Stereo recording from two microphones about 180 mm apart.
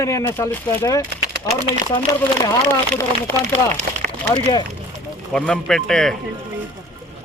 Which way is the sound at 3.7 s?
40° right (ahead or behind).